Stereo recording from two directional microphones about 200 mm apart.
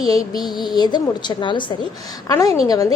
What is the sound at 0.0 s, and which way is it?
Speech, 20° left (ahead or behind).